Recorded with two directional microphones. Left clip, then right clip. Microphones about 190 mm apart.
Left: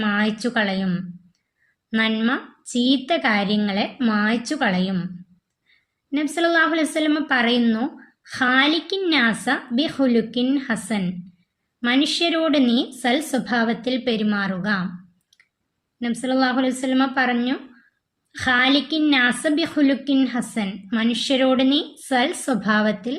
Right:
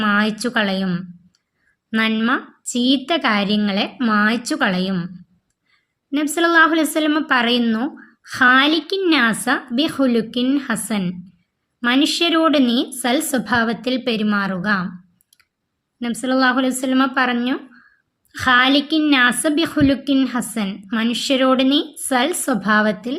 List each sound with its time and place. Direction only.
0.0 s a woman's voice: 35° right (ahead or behind)
6.1 s a woman's voice: 35° right (ahead or behind)
16.0 s a woman's voice: 35° right (ahead or behind)